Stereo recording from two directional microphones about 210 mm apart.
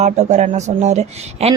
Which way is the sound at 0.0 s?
35° right (ahead or behind).